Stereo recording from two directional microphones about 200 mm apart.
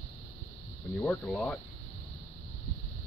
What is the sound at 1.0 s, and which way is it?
Speech, 5° left (ahead or behind).